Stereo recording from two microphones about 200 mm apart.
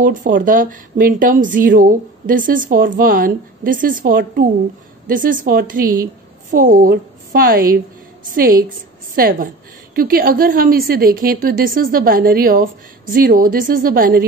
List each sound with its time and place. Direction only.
0.0 s a woman's voice: 40° right (ahead or behind)